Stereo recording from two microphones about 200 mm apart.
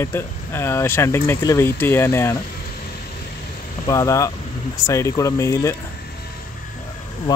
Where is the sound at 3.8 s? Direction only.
15° left (ahead or behind).